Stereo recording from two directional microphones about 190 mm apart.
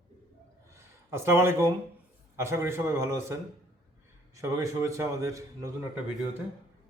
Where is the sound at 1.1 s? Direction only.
15° right (ahead or behind).